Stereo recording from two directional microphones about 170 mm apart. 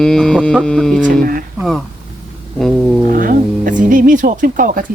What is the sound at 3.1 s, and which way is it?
Speech, 55° right (ahead or behind).